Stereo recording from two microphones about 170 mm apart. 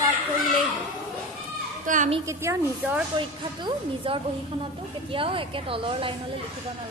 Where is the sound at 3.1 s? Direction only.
30° right (ahead or behind).